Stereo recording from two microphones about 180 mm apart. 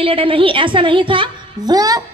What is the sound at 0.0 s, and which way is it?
A woman's voice, 30° right (ahead or behind).